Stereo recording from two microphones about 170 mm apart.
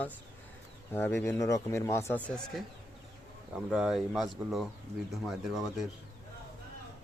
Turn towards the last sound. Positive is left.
turn(degrees=0)  # may be behind; listen again after turning